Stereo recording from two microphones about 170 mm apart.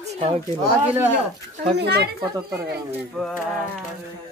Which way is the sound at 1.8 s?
75° right (ahead or behind).